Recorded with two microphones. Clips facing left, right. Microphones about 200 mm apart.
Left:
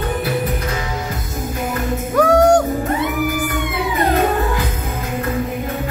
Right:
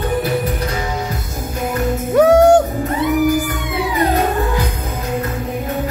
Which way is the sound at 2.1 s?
25° right (ahead or behind).